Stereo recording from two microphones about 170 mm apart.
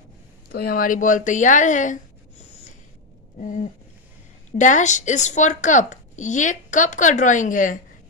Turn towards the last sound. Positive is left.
turn(degrees=50)  # may be behind; listen again after turning